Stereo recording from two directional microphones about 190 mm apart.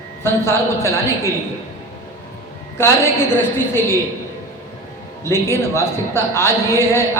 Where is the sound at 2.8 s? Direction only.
15° left (ahead or behind).